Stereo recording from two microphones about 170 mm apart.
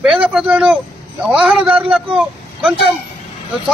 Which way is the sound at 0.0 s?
5° right (ahead or behind).